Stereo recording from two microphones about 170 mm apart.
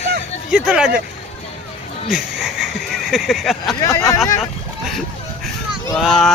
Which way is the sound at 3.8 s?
20° left (ahead or behind).